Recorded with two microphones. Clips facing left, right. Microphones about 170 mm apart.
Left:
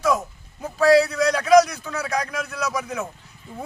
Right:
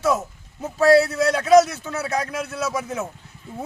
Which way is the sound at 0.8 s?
25° right (ahead or behind).